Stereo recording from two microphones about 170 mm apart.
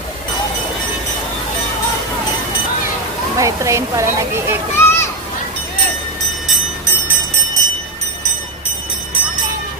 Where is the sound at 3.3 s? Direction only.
20° right (ahead or behind).